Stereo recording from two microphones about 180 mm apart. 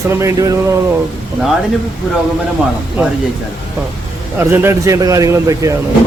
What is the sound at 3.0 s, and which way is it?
Speech, 10° right (ahead or behind).